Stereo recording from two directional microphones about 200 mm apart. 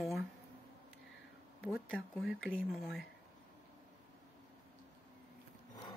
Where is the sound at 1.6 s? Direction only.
Centre (ahead or behind).